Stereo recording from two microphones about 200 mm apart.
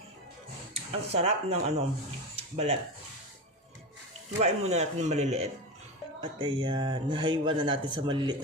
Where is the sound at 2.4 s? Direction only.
30° right (ahead or behind).